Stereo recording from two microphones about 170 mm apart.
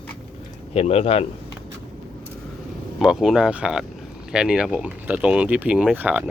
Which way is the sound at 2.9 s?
5° right (ahead or behind).